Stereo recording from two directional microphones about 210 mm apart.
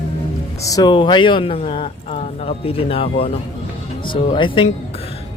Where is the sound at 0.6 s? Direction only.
15° left (ahead or behind).